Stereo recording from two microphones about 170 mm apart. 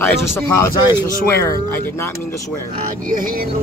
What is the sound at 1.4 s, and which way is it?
Speech, 15° left (ahead or behind).